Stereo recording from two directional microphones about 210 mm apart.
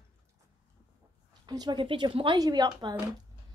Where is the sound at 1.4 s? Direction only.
20° right (ahead or behind).